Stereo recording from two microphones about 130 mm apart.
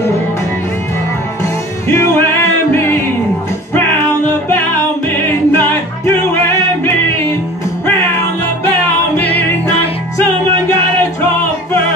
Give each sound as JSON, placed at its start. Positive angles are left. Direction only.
{"t": 1.4, "sound": "music", "side_deg": 20}
{"t": 9.1, "sound": "music", "side_deg": 15}